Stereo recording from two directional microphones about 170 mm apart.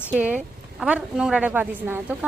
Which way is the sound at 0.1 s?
10° right (ahead or behind).